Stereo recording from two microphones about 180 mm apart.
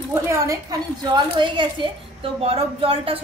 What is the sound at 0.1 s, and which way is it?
A woman's voice, 15° right (ahead or behind).